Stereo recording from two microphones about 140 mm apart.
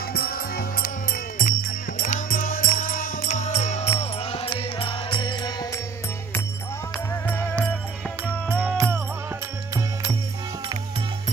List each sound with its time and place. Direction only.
0.1 s music: 90° left
2.0 s music: 65° left (ahead or behind); by 5.7 s 30° left (ahead or behind)
7.2 s music: 15° left (ahead or behind)
8.7 s music: 15° right (ahead or behind)